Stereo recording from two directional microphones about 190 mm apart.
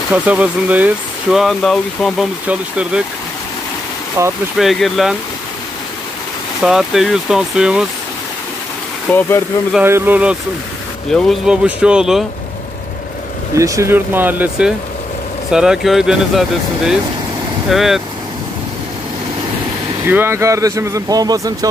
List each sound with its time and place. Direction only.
0.1 s speech: 5° right (ahead or behind)
4.2 s speech: 15° right (ahead or behind)
4.6 s speech: centre (ahead or behind)
6.6 s speech: centre (ahead or behind)
9.1 s speech: 5° left (ahead or behind)
9.8 s speech: 10° right (ahead or behind)
11.1 s speech: centre (ahead or behind)
13.6 s speech: 15° right (ahead or behind)
20.1 s speech: 10° right (ahead or behind)